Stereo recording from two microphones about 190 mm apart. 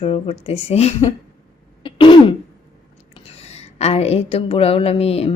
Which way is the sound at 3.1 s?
30° left (ahead or behind).